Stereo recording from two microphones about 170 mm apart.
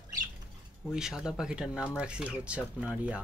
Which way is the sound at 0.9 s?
5° right (ahead or behind).